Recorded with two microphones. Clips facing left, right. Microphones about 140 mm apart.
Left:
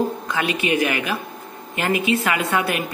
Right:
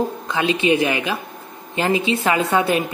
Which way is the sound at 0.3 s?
25° right (ahead or behind).